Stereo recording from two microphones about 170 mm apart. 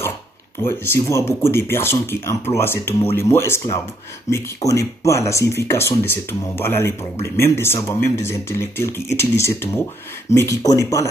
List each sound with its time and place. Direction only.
0.6 s speech: 15° left (ahead or behind)